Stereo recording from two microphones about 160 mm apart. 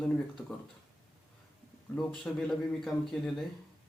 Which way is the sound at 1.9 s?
Centre (ahead or behind).